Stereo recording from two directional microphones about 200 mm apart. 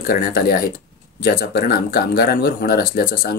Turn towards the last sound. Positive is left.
turn(degrees=45)  # may be behind; listen again after turning